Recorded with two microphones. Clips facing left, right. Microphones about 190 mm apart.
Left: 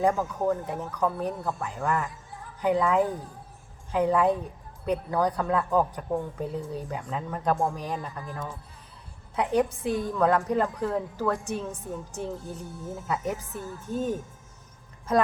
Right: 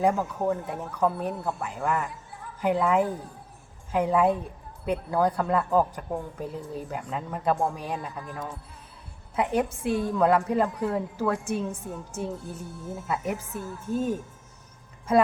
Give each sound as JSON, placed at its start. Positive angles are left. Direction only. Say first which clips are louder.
{"t": 0.0, "sound": "a woman's voice", "louder": "even", "side_deg": -5}